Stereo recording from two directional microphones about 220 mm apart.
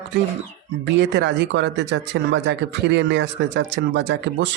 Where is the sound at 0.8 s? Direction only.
50° right (ahead or behind).